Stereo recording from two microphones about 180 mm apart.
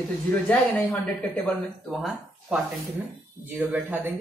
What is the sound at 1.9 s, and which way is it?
Speech, centre (ahead or behind).